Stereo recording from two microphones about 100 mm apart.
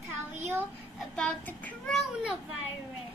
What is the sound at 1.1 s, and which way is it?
Speech, 10° left (ahead or behind).